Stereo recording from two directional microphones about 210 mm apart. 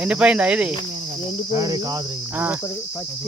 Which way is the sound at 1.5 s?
15° right (ahead or behind).